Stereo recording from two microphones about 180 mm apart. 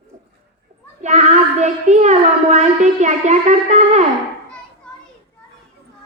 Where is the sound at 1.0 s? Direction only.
40° right (ahead or behind).